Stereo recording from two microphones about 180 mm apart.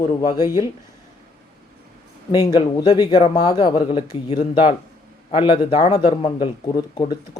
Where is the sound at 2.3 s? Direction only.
25° left (ahead or behind).